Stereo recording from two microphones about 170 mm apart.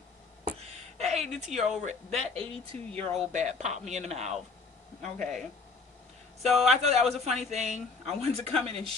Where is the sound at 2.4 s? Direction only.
35° right (ahead or behind).